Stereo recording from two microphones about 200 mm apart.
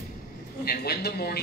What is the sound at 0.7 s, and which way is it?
Speech, 50° left (ahead or behind).